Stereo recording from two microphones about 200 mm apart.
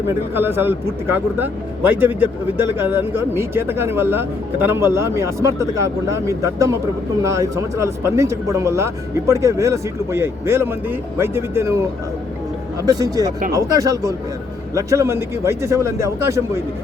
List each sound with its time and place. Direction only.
0.1 s speech: 10° right (ahead or behind)